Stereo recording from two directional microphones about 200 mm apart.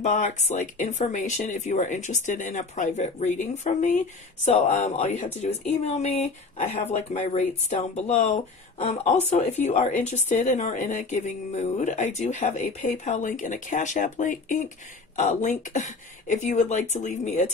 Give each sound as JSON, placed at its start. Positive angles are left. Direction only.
{"t": 0.0, "sound": "speech", "side_deg": 40}